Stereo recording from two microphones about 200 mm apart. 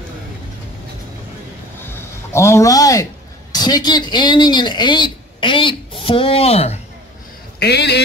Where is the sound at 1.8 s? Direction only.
10° left (ahead or behind).